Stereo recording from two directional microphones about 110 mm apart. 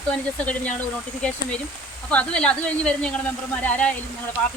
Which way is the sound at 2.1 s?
10° left (ahead or behind).